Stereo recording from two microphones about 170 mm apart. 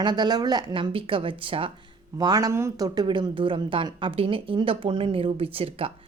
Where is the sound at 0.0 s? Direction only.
25° right (ahead or behind).